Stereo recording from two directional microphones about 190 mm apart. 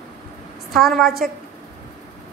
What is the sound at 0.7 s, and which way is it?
Speech, centre (ahead or behind).